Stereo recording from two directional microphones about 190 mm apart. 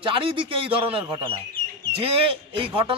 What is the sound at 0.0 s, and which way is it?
A man's voice, 25° right (ahead or behind).